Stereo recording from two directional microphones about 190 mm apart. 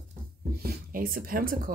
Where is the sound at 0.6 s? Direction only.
50° right (ahead or behind).